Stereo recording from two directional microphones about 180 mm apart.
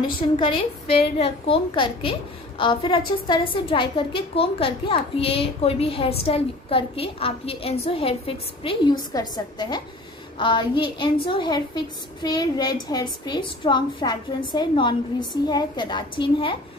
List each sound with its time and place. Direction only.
0.4 s a child's voice: 30° left (ahead or behind)